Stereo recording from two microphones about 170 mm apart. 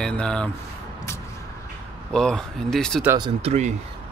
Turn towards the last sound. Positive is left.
turn(degrees=-40)  # may be behind; listen again after turning